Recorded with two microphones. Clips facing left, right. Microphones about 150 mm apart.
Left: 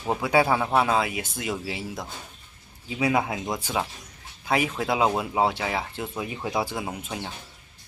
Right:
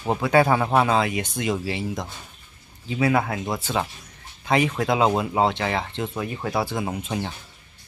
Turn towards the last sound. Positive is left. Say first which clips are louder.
# right 5 dB
turn(degrees=0)  # may be behind; listen again after turning